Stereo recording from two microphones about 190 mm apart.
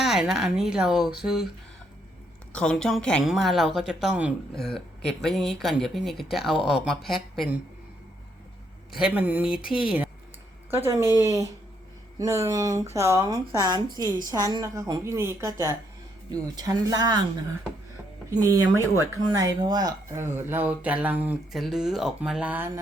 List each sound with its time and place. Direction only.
0.0 s a woman's voice: centre (ahead or behind)
2.5 s a woman's voice: 5° left (ahead or behind)
8.9 s speech: 5° right (ahead or behind)
9.6 s speech: 50° left (ahead or behind)
10.7 s speech: 15° right (ahead or behind)
12.2 s speech: 15° right (ahead or behind)